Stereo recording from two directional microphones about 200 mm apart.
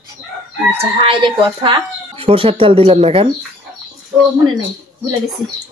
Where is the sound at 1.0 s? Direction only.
25° right (ahead or behind).